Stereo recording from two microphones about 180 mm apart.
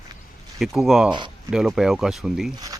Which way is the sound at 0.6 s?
Centre (ahead or behind).